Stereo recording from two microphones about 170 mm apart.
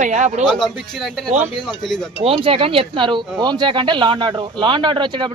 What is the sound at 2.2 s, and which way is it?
A woman's voice, 35° right (ahead or behind).